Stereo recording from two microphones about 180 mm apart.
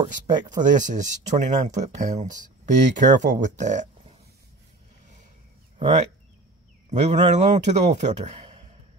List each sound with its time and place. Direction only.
0.0 s speech: 25° right (ahead or behind)
0.5 s speech: 45° right (ahead or behind)
5.8 s speech: 35° right (ahead or behind)